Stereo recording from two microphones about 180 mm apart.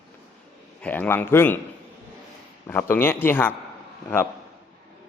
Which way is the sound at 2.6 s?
10° left (ahead or behind).